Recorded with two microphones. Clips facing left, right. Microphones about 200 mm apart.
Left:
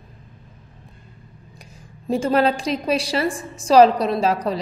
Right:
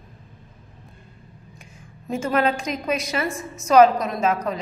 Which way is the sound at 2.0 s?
35° left (ahead or behind).